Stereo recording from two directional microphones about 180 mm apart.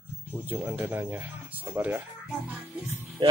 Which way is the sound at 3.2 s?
25° right (ahead or behind).